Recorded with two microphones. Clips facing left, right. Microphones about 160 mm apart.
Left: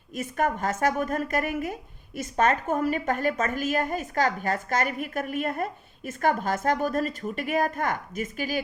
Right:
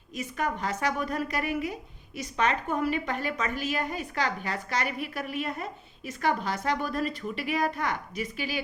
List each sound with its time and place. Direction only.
0.1 s a woman's voice: 50° left (ahead or behind)